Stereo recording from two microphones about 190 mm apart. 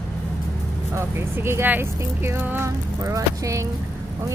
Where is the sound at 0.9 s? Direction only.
15° right (ahead or behind).